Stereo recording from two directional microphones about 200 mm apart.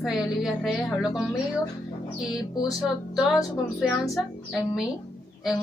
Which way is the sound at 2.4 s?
20° left (ahead or behind).